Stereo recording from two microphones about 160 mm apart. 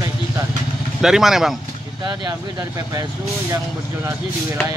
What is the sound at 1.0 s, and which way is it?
Speech, centre (ahead or behind).